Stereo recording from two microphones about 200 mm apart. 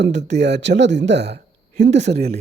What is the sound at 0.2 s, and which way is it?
A man's voice, 60° right (ahead or behind).